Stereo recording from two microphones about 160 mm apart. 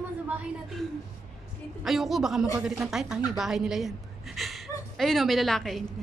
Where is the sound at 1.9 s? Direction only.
Centre (ahead or behind).